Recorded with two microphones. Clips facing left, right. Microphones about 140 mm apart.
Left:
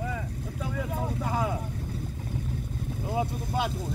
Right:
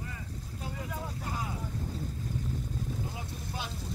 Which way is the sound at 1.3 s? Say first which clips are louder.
Left 9 dB; 90° left.